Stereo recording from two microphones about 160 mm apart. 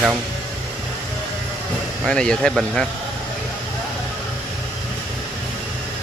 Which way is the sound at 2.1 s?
5° left (ahead or behind).